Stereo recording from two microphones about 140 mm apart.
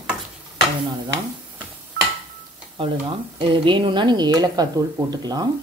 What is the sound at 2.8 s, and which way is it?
Speech, 40° right (ahead or behind).